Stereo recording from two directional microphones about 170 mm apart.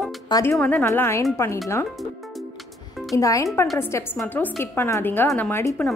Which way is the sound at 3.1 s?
20° left (ahead or behind).